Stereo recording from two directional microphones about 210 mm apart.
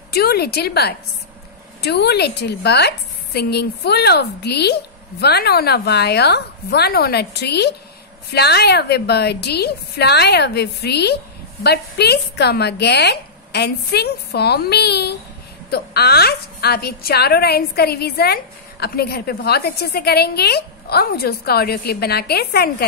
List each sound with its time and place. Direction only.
0.1 s a woman's voice: 50° left (ahead or behind)